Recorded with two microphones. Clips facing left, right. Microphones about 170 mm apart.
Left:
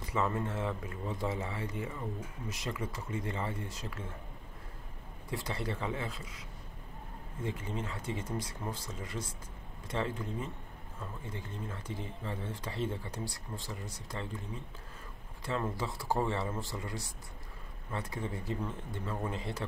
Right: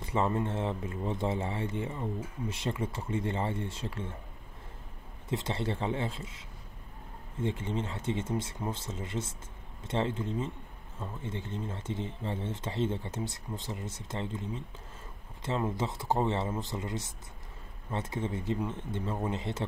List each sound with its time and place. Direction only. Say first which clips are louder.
0.0 s speech: right 3 dB; 25° right (ahead or behind)
5.3 s speech: right 4 dB; 25° right (ahead or behind)
7.4 s speech: right 5 dB; 25° right (ahead or behind)
15.4 s speech: right 3 dB; 20° right (ahead or behind)